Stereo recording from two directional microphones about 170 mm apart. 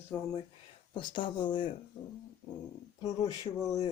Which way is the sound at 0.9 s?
30° left (ahead or behind).